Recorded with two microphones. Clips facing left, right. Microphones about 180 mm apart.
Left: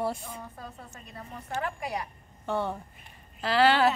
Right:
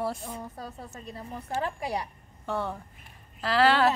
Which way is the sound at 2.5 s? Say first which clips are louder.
Left 1 dB; centre (ahead or behind).